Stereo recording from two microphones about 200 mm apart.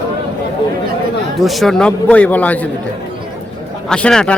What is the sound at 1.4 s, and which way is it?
A man's voice, centre (ahead or behind).